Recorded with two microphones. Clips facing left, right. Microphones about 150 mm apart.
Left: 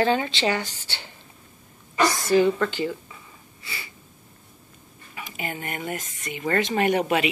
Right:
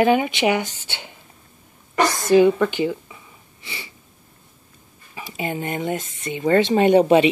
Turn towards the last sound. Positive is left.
turn(degrees=-25)  # may be behind; listen again after turning